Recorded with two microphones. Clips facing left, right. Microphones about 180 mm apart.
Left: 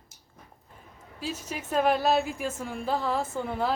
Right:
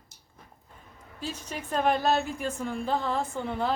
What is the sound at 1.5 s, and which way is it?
A woman's voice, 5° left (ahead or behind).